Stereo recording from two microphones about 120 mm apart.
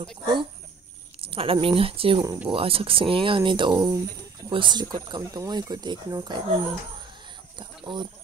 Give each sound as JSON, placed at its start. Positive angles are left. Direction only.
{"t": 0.2, "sound": "speech", "side_deg": -40}
{"t": 7.5, "sound": "speech", "side_deg": -40}